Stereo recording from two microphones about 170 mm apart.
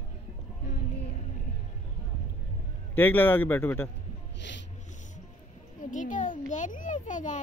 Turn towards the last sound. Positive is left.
turn(degrees=50)  # may be behind; listen again after turning